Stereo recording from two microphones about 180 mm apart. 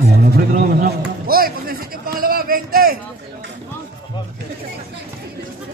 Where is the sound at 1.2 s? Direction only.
55° right (ahead or behind).